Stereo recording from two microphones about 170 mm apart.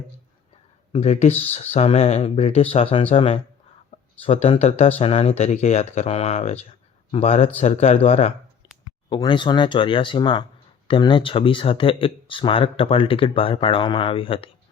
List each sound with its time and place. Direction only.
0.9 s speech: 40° left (ahead or behind)